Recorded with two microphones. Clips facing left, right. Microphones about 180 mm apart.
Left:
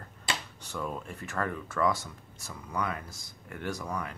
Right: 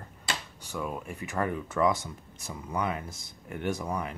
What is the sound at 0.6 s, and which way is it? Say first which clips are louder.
Speech: right 2 dB; 10° right (ahead or behind).